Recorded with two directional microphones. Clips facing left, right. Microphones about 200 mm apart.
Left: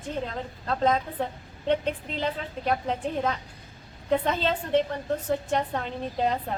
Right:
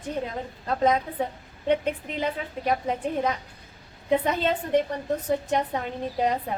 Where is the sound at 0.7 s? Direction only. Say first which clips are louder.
Right 2 dB; 10° right (ahead or behind).